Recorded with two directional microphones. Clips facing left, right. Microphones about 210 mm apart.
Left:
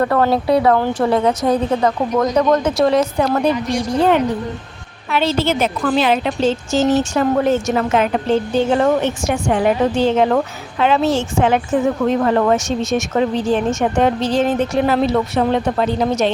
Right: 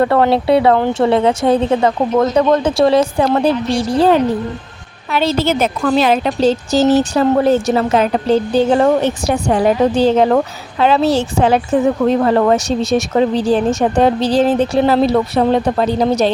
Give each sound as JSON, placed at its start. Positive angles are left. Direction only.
{"t": 0.0, "sound": "a woman's voice", "side_deg": -25}